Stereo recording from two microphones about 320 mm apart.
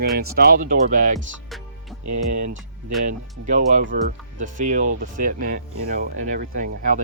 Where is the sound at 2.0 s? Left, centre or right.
Right.